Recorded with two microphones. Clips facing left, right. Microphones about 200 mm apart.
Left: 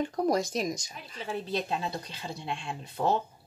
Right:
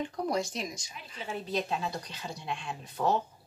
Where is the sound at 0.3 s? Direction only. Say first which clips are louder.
Left 5 dB; 40° left (ahead or behind).